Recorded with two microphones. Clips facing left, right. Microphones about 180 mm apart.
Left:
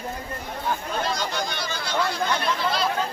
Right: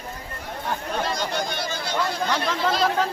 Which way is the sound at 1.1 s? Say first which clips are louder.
Right 2 dB; 55° right (ahead or behind).